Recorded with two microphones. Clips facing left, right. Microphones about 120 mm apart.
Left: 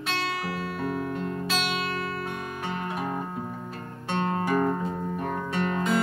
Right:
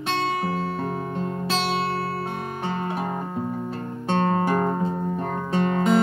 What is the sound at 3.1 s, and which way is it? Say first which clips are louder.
Music: right 4 dB; 20° right (ahead or behind).